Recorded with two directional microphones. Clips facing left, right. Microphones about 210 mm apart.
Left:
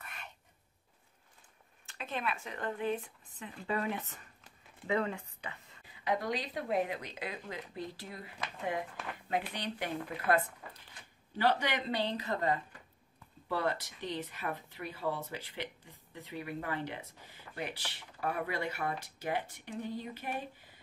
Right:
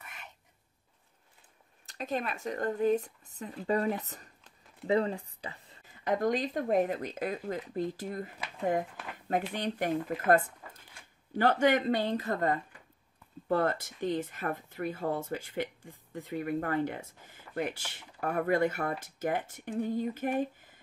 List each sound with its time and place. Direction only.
1.9 s speech: 40° right (ahead or behind)
9.5 s speech: 45° right (ahead or behind)